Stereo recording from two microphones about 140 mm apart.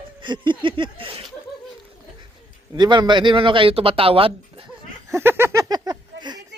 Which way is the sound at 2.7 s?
30° right (ahead or behind).